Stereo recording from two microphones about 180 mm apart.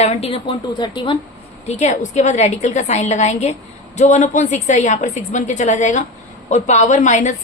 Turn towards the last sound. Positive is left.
turn(degrees=40)  # may be behind; listen again after turning